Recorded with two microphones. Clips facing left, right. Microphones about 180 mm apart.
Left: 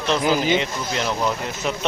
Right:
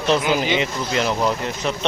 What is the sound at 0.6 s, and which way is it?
Speech, centre (ahead or behind).